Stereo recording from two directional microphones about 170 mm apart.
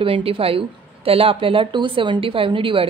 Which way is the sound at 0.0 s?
30° right (ahead or behind).